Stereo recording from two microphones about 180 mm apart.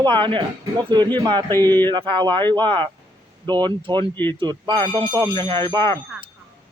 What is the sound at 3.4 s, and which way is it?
Speech, 25° right (ahead or behind).